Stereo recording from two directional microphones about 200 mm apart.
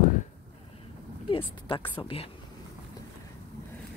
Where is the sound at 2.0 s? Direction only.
25° left (ahead or behind).